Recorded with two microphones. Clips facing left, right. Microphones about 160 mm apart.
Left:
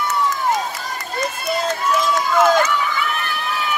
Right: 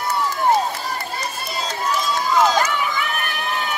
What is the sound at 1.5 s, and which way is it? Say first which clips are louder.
Run: left 8 dB; 55° left (ahead or behind).